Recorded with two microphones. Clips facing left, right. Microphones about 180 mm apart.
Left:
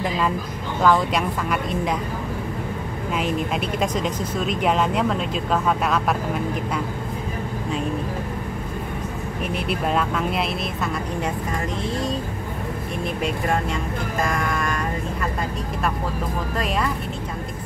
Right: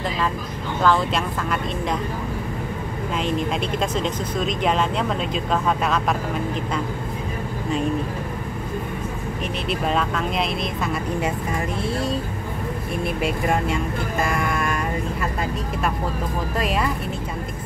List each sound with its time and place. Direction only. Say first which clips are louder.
0.8 s speech: left 1 dB; 10° left (ahead or behind)
3.2 s speech: even; 5° left (ahead or behind)
9.7 s speech: right 1 dB; 5° left (ahead or behind)
13.2 s speech: right 1 dB; 5° right (ahead or behind)
16.5 s speech: right 1 dB; 5° right (ahead or behind)